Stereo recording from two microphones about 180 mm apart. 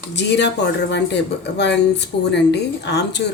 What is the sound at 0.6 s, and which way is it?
Speech, 70° left (ahead or behind).